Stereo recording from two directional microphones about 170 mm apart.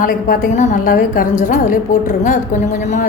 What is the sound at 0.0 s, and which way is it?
A woman's voice, 55° left (ahead or behind).